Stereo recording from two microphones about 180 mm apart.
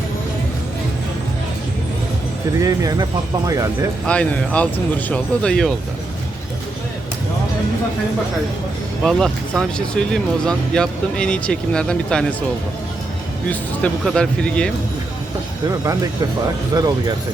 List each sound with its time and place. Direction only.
2.6 s speech: 20° right (ahead or behind)
4.0 s speech: 5° left (ahead or behind)
9.0 s speech: 5° left (ahead or behind)
13.5 s speech: 5° left (ahead or behind)
16.7 s speech: 20° right (ahead or behind)